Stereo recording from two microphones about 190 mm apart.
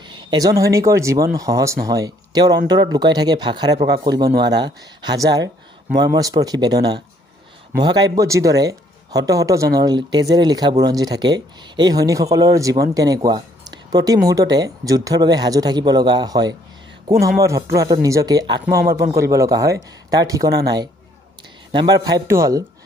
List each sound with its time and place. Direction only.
0.0 s speech: 25° right (ahead or behind)